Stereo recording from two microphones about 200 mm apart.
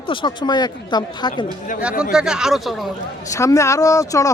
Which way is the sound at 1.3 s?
40° left (ahead or behind).